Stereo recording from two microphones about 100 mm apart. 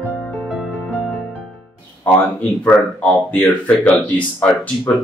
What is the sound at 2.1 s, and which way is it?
A man's voice, 15° left (ahead or behind).